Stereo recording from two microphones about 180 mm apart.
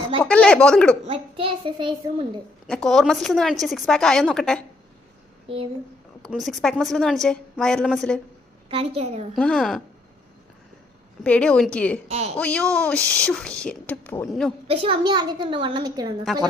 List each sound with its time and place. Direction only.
0.2 s a woman's voice: 5° left (ahead or behind)
1.0 s a child's voice: 30° right (ahead or behind)
2.6 s a woman's voice: centre (ahead or behind)
6.2 s a woman's voice: centre (ahead or behind)
8.7 s a child's voice: 35° right (ahead or behind)
9.3 s a woman's voice: 5° left (ahead or behind)
11.2 s a woman's voice: 5° left (ahead or behind)
12.0 s a child's voice: 35° right (ahead or behind)
12.4 s a woman's voice: 5° left (ahead or behind)
14.7 s a child's voice: 30° right (ahead or behind)
16.2 s a woman's voice: centre (ahead or behind)